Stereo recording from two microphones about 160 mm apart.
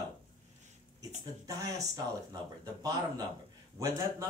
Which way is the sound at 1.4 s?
20° right (ahead or behind).